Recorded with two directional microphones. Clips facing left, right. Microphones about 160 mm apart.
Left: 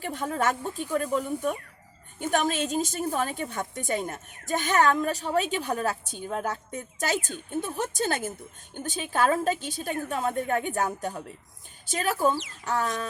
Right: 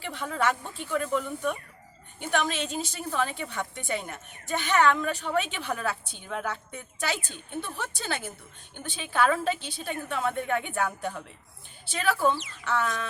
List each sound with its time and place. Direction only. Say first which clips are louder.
0.0 s a woman's voice: left 1 dB; 45° left (ahead or behind)
1.2 s speech: left 2 dB; 15° left (ahead or behind)
2.1 s a woman's voice: left 2 dB; 45° left (ahead or behind)